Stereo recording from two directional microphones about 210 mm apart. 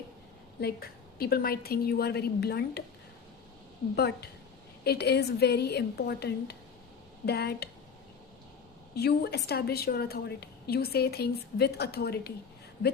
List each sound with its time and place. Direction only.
0.6 s a woman's voice: 45° left (ahead or behind)
3.9 s a woman's voice: 50° left (ahead or behind)
9.0 s a woman's voice: 50° left (ahead or behind)